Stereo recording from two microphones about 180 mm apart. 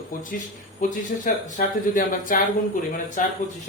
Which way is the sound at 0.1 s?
50° left (ahead or behind).